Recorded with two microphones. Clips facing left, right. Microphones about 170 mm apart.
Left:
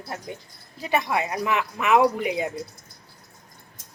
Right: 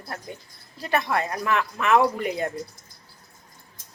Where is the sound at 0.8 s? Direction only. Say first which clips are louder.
Even; 15° left (ahead or behind).